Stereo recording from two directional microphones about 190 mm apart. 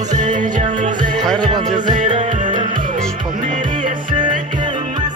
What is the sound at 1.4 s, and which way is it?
Music, 25° right (ahead or behind).